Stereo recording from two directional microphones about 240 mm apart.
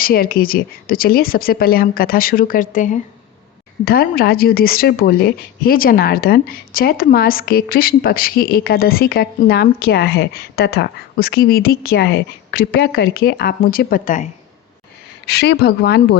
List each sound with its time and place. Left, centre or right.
0.0 s a woman's voice: left
15.3 s a woman's voice: left